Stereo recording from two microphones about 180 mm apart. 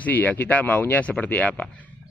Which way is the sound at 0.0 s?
10° left (ahead or behind).